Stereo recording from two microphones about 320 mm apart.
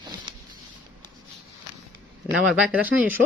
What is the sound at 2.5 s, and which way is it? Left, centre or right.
Speech, centre.